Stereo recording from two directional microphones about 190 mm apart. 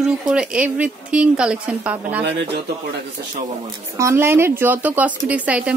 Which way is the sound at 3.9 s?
15° right (ahead or behind).